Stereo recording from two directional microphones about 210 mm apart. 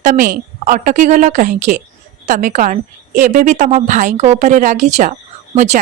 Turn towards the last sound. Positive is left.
turn(degrees=-35)  # may be behind; listen again after turning